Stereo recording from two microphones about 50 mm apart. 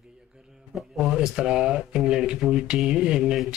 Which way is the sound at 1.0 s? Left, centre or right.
Centre.